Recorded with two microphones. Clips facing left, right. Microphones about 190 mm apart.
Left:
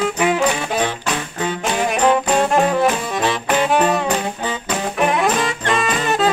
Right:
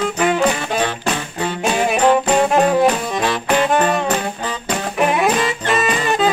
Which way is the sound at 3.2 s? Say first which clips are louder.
Right 1 dB; 5° left (ahead or behind).